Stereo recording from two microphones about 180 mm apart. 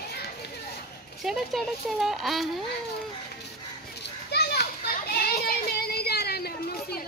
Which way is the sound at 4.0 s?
65° left (ahead or behind).